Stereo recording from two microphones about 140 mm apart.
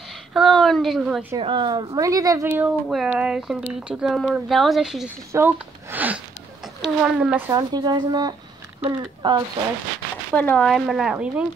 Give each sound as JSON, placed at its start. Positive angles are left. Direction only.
{"t": 0.3, "sound": "a woman's voice", "side_deg": 0}
{"t": 1.4, "sound": "speech", "side_deg": -35}
{"t": 2.4, "sound": "a woman's voice", "side_deg": -15}
{"t": 5.3, "sound": "speech", "side_deg": -15}
{"t": 7.5, "sound": "speech", "side_deg": -30}
{"t": 10.3, "sound": "a woman's voice", "side_deg": 10}